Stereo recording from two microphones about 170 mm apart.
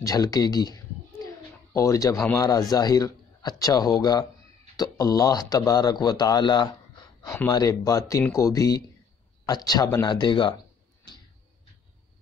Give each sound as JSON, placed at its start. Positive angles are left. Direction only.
{"t": 0.0, "sound": "speech", "side_deg": 20}
{"t": 1.2, "sound": "a sound", "side_deg": 20}
{"t": 2.2, "sound": "speech", "side_deg": 20}